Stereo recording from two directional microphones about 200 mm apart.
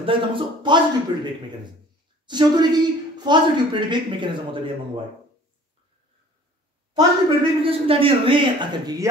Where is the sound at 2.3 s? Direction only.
20° right (ahead or behind).